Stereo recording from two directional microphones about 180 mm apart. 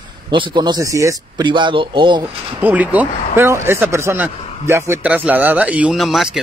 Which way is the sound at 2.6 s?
10° right (ahead or behind).